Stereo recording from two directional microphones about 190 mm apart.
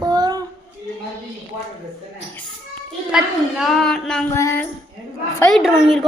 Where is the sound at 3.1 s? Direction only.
Centre (ahead or behind).